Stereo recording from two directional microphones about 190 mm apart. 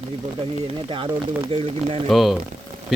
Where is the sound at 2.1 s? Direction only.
Centre (ahead or behind).